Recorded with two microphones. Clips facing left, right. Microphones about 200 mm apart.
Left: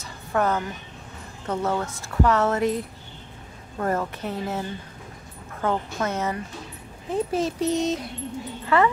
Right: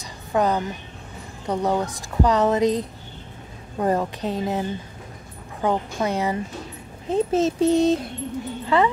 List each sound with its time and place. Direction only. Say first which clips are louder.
0.0 s a sound: right 2 dB; 15° right (ahead or behind)
1.4 s a woman's voice: right 3 dB; 15° right (ahead or behind); by 8.0 s 30° right (ahead or behind)
8.6 s speech: right 1 dB; 20° right (ahead or behind)